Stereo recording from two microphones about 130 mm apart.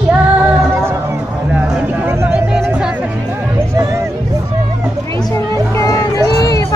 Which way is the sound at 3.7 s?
25° right (ahead or behind).